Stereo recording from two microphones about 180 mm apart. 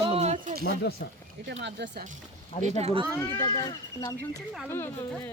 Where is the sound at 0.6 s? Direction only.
65° left (ahead or behind).